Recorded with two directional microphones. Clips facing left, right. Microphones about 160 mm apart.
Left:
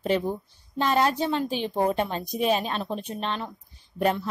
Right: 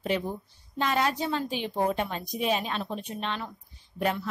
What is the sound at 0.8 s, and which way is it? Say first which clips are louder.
A woman's voice: left 4 dB; 35° left (ahead or behind).